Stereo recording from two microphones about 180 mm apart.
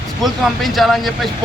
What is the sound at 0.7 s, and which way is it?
Speech, centre (ahead or behind).